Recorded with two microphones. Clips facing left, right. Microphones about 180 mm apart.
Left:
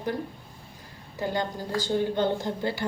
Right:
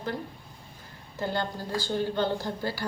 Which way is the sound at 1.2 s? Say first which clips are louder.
Left 2 dB; 15° left (ahead or behind).